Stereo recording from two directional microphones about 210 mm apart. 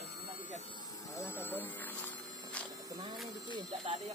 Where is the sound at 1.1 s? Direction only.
10° left (ahead or behind).